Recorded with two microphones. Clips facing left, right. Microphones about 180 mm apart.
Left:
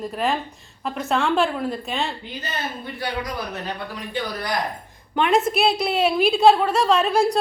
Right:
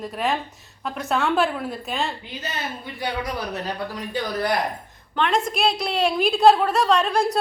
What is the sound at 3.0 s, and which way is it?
Speech, 30° right (ahead or behind).